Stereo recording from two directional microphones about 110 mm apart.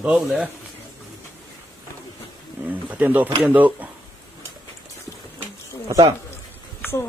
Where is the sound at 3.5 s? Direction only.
15° right (ahead or behind).